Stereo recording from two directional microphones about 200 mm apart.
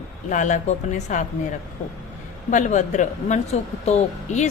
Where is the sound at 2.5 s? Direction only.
35° left (ahead or behind).